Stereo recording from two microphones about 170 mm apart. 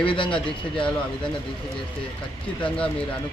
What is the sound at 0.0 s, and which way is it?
Speech, 30° left (ahead or behind).